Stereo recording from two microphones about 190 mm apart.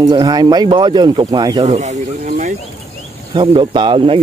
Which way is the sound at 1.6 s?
35° right (ahead or behind).